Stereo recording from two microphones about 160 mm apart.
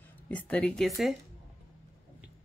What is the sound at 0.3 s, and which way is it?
Speech, 10° left (ahead or behind).